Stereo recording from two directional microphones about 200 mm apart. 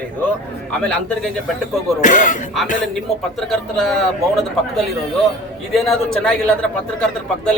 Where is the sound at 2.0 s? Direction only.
40° left (ahead or behind).